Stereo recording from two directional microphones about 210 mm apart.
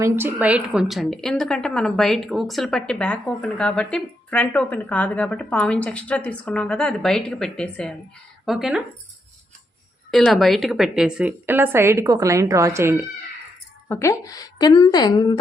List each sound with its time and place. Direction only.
0.0 s a woman's voice: 10° right (ahead or behind)
10.1 s a woman's voice: centre (ahead or behind)
13.8 s a woman's voice: 10° left (ahead or behind)